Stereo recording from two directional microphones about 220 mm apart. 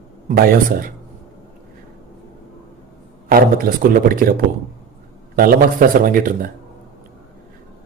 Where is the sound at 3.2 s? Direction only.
40° right (ahead or behind).